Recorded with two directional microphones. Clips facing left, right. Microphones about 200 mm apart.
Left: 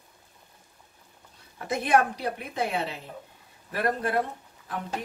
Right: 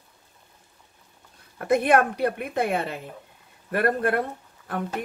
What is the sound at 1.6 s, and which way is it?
A woman's voice, 60° right (ahead or behind).